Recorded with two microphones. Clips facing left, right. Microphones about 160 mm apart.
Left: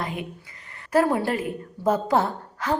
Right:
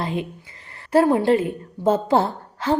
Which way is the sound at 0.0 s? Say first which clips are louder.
Right 5 dB; 30° right (ahead or behind).